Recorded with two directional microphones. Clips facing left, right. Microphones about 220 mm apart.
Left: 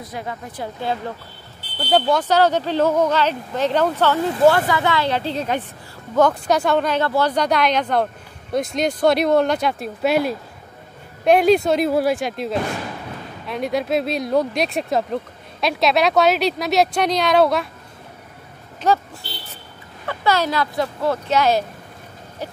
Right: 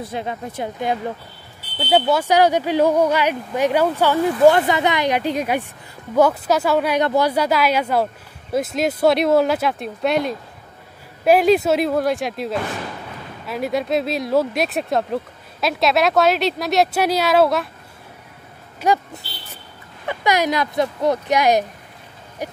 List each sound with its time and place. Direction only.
0.0 s speech: 25° right (ahead or behind); by 17.6 s centre (ahead or behind)
18.8 s speech: 10° right (ahead or behind)
20.1 s speech: 15° right (ahead or behind)